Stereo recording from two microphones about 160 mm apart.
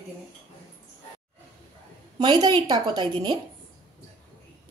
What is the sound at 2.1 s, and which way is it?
A woman's voice, 25° right (ahead or behind).